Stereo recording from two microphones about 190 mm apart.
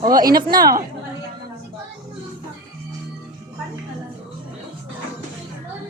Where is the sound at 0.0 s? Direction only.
20° right (ahead or behind).